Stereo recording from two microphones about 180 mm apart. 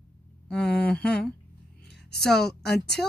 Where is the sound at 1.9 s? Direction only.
65° left (ahead or behind).